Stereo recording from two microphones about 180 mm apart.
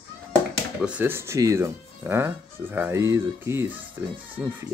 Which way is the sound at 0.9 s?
10° right (ahead or behind).